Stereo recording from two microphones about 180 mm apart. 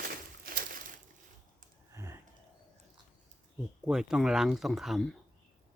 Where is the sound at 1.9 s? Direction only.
15° right (ahead or behind).